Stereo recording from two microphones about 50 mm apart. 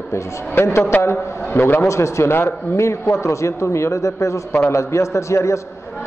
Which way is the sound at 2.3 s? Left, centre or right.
Left.